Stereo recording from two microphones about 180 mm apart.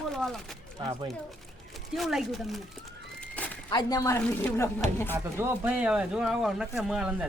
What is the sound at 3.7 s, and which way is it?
A woman's voice, 20° left (ahead or behind).